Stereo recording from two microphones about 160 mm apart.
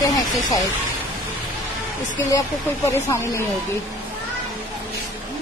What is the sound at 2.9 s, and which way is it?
Speech, 15° left (ahead or behind).